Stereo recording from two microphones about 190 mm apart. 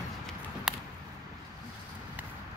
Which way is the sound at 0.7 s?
Centre (ahead or behind).